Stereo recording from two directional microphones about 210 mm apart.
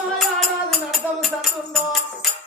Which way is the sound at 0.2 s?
Centre (ahead or behind).